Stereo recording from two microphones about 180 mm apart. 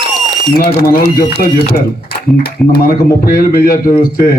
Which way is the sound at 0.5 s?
55° left (ahead or behind).